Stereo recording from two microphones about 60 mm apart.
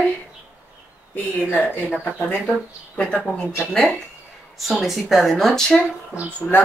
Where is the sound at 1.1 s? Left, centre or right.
Left.